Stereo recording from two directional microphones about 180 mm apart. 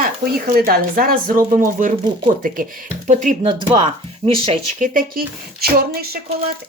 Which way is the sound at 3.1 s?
45° right (ahead or behind).